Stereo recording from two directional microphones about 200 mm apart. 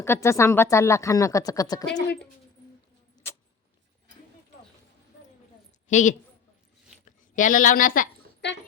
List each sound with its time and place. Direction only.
0.0 s speech: 15° left (ahead or behind)
5.9 s a woman's voice: 40° left (ahead or behind)
7.3 s a woman's voice: 40° left (ahead or behind)